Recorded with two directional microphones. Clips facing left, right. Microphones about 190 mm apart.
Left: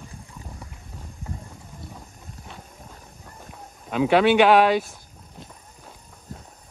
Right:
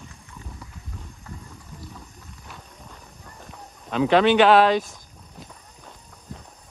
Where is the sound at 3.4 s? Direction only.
10° left (ahead or behind).